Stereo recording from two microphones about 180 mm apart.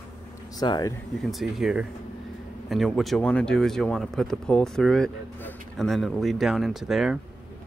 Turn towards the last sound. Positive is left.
turn(degrees=0)  # may be behind; listen again after turning